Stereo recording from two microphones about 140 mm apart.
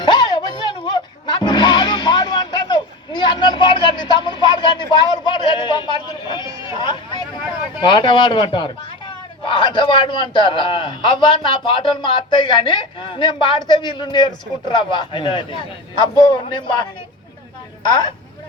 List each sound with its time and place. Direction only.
0.0 s music: 35° left (ahead or behind)
6.6 s speech: 35° left (ahead or behind)